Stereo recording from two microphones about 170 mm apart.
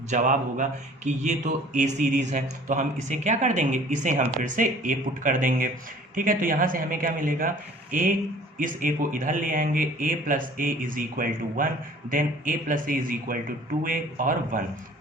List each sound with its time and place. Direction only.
0.1 s speech: 45° right (ahead or behind)